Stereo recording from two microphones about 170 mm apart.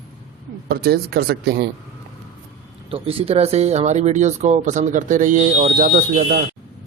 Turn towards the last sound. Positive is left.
turn(degrees=-50)  # may be behind; listen again after turning